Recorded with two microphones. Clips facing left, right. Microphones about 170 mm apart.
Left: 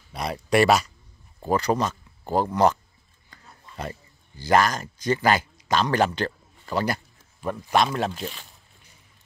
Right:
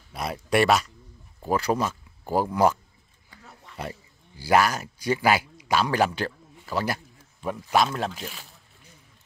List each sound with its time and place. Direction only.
0.1 s speech: centre (ahead or behind)
3.7 s a sound: 80° right
4.4 s speech: 10° right (ahead or behind)